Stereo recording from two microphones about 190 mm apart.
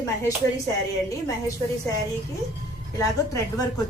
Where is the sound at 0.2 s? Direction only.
20° left (ahead or behind).